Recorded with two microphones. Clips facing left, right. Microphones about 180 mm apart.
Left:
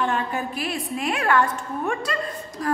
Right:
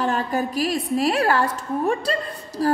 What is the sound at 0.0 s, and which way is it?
A woman's voice, 35° right (ahead or behind).